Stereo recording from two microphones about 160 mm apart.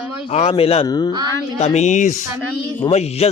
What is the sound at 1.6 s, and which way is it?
A man's voice, 45° left (ahead or behind).